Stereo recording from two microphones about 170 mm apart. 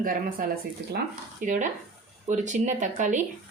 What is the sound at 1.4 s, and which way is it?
Speech, 50° right (ahead or behind).